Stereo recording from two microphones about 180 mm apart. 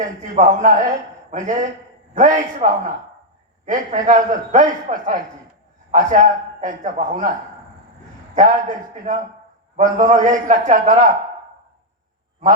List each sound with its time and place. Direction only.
0.0 s a man's voice: 40° right (ahead or behind)
8.4 s a man's voice: 40° right (ahead or behind)